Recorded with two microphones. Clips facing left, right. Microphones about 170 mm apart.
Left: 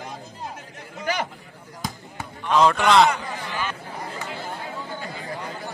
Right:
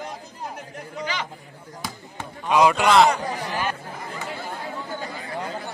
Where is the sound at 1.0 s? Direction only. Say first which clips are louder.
Left 4 dB; 50° left (ahead or behind).